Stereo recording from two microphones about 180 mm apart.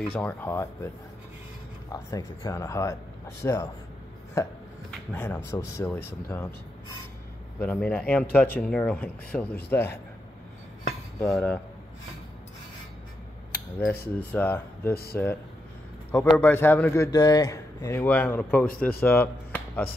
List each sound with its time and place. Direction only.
0.1 s a man's voice: 10° left (ahead or behind)
1.9 s a man's voice: 20° left (ahead or behind)
7.5 s a man's voice: 10° left (ahead or behind)
11.2 s cutlery: 5° left (ahead or behind)
13.7 s a man's voice: 10° left (ahead or behind)
16.3 s a man's voice: 10° left (ahead or behind)